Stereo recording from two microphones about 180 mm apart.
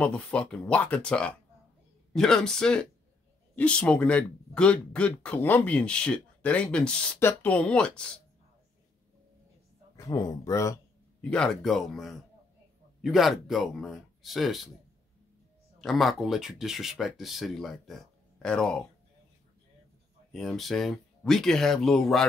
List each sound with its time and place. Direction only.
0.0 s speech: 5° left (ahead or behind)
9.9 s a sound: 20° left (ahead or behind)
11.2 s speech: 5° left (ahead or behind)
15.8 s speech: centre (ahead or behind)
20.3 s speech: centre (ahead or behind)